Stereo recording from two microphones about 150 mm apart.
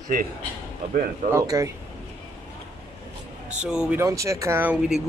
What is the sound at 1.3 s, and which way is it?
Speech, 20° right (ahead or behind).